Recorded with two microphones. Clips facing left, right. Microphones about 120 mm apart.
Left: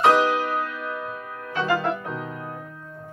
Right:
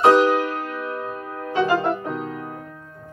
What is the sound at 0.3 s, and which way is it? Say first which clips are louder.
Music: right 2 dB; 50° right (ahead or behind).